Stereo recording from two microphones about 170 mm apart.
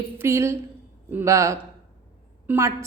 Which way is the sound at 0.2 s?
15° right (ahead or behind).